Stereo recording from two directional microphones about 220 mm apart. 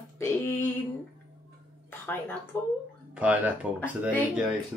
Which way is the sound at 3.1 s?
5° right (ahead or behind).